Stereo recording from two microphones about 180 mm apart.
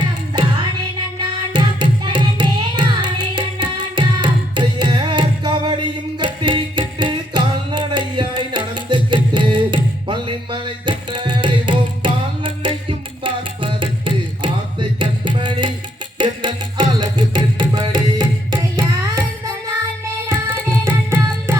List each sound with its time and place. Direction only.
1.2 s music: 25° right (ahead or behind)
20.3 s carnatic music: 15° right (ahead or behind)